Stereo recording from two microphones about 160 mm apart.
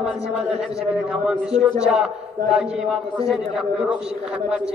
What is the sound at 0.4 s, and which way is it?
A man's voice, centre (ahead or behind).